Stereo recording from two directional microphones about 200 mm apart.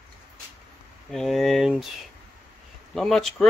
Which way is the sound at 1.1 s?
Centre (ahead or behind).